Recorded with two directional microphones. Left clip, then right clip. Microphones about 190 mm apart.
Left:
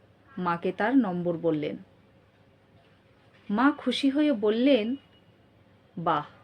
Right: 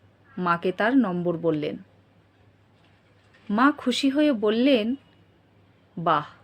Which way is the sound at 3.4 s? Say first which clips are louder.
Right 3 dB; 15° right (ahead or behind).